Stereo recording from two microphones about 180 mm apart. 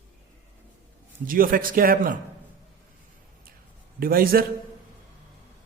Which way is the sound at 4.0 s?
55° right (ahead or behind).